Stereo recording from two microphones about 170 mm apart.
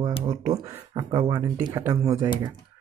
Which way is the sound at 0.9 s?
25° right (ahead or behind).